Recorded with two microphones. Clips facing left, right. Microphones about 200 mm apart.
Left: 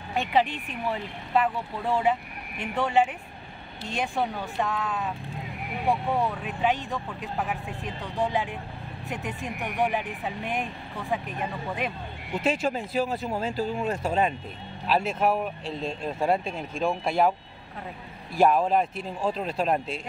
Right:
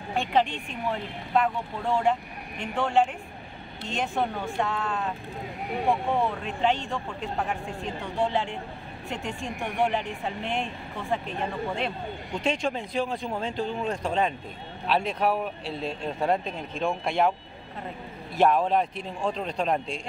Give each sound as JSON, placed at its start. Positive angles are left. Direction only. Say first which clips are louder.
{"t": 0.1, "sound": "speech", "louder": "even", "side_deg": 5}
{"t": 8.0, "sound": "speech", "louder": "even", "side_deg": 15}
{"t": 9.8, "sound": "speech", "louder": "right 1 dB", "side_deg": 5}
{"t": 11.8, "sound": "speech", "louder": "right 1 dB", "side_deg": 5}
{"t": 16.0, "sound": "speech", "louder": "left 1 dB", "side_deg": 5}
{"t": 18.4, "sound": "speech", "louder": "left 1 dB", "side_deg": 5}